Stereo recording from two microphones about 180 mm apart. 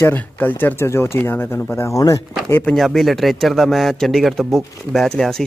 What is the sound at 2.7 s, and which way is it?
Speech, centre (ahead or behind).